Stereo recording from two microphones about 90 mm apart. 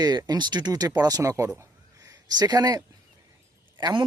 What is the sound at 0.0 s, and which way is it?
Speech, 45° right (ahead or behind).